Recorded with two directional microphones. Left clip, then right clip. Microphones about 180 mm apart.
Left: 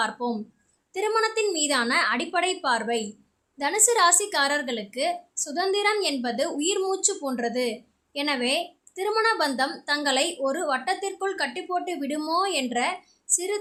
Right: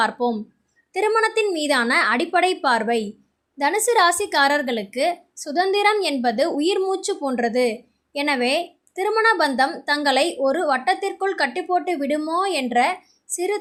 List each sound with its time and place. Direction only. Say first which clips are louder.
0.0 s a woman's voice: right 6 dB; 25° right (ahead or behind)